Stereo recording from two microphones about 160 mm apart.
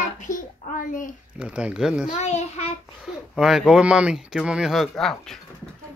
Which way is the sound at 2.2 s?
45° left (ahead or behind).